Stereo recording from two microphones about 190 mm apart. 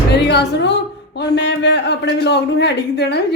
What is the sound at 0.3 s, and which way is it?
A woman's voice, 65° left (ahead or behind).